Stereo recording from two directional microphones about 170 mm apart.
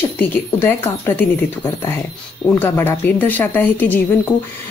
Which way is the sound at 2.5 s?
10° left (ahead or behind).